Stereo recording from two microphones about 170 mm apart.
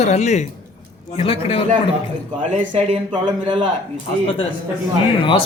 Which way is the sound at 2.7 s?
25° right (ahead or behind).